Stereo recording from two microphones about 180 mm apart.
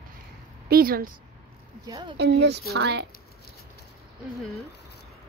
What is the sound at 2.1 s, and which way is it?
Speech, 70° right (ahead or behind).